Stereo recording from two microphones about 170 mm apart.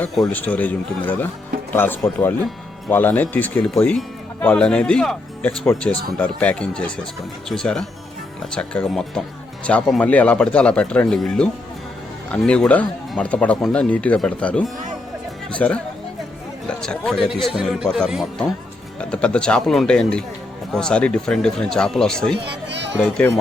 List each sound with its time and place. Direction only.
0.3 s speech: 10° left (ahead or behind)
22.4 s a sound: 85° right
23.0 s speech: 5° left (ahead or behind)